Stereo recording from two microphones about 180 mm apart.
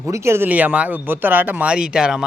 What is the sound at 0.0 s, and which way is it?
Speech, 15° right (ahead or behind).